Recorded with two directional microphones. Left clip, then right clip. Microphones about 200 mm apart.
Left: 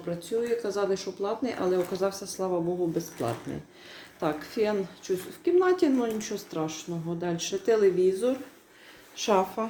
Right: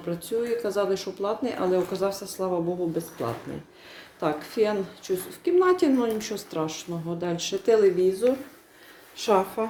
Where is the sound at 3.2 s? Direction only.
10° left (ahead or behind).